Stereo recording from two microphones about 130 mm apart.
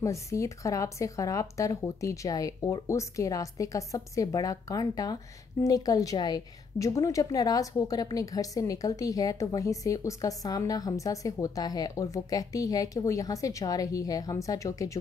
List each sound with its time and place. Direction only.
0.0 s speech: 25° left (ahead or behind)